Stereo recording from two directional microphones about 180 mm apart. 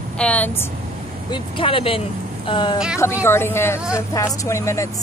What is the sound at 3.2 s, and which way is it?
Speech, 15° left (ahead or behind).